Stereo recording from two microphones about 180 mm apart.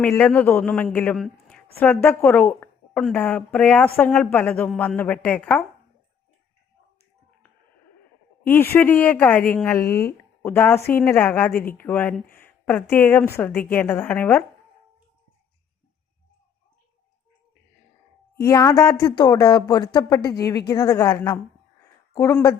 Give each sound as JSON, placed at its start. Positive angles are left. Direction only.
{"t": 0.0, "sound": "a woman's voice", "side_deg": 10}
{"t": 8.4, "sound": "a woman's voice", "side_deg": 10}
{"t": 18.3, "sound": "a woman's voice", "side_deg": 15}